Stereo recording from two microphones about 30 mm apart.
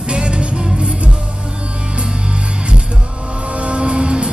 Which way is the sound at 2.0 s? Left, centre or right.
Right.